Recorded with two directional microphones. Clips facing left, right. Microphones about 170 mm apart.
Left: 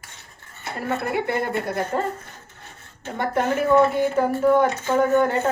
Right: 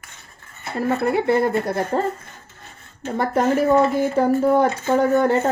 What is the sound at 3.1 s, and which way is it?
Speech, 35° right (ahead or behind).